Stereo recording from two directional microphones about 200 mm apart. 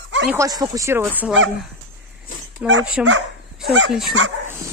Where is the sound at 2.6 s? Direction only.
65° right (ahead or behind).